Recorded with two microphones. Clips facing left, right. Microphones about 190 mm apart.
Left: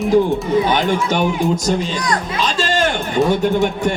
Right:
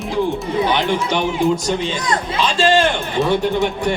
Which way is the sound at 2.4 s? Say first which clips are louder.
Right 4 dB; 45° left (ahead or behind).